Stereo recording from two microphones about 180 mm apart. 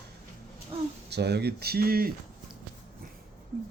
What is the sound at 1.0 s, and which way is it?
Speech, 65° right (ahead or behind).